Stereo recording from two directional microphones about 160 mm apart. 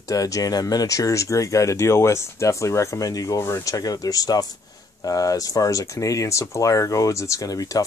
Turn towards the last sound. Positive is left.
turn(degrees=20)  # may be behind; listen again after turning